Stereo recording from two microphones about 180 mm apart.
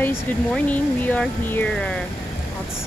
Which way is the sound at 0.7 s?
10° left (ahead or behind).